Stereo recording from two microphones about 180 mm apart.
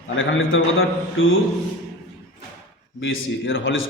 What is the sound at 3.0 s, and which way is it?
Speech, 90° left.